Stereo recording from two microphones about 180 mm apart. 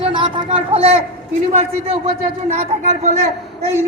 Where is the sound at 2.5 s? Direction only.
40° right (ahead or behind).